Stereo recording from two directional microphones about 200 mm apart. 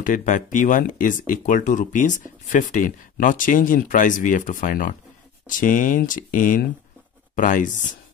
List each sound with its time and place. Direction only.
0.0 s speech: 40° left (ahead or behind)